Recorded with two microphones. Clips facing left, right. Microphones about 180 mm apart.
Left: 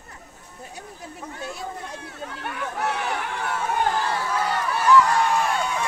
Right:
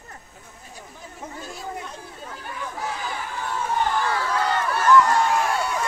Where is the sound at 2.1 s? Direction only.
70° left (ahead or behind).